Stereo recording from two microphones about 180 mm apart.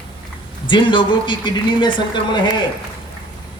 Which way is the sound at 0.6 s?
25° left (ahead or behind).